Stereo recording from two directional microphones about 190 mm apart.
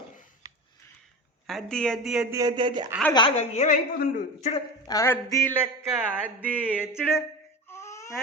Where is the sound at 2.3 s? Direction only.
20° right (ahead or behind).